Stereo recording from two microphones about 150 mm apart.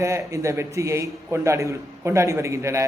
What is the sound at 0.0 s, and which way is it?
A man's voice, 20° right (ahead or behind).